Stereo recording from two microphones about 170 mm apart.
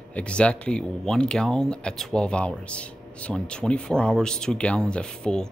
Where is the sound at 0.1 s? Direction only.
5° left (ahead or behind).